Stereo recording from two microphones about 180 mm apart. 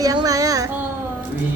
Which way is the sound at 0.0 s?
20° right (ahead or behind).